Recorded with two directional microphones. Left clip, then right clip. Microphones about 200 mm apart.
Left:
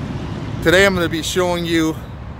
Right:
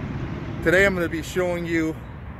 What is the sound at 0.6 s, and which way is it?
Speech, centre (ahead or behind).